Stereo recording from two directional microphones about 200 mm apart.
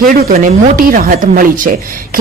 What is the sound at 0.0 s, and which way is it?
Speech, 45° right (ahead or behind).